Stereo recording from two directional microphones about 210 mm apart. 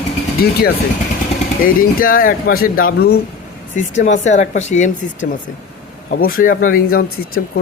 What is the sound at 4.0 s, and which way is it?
Speech, 35° left (ahead or behind).